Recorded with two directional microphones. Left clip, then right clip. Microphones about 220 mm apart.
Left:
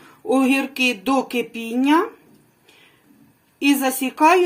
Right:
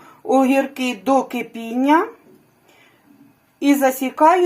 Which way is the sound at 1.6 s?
15° left (ahead or behind).